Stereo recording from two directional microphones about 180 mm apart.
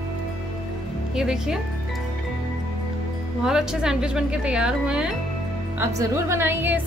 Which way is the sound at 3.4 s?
5° right (ahead or behind).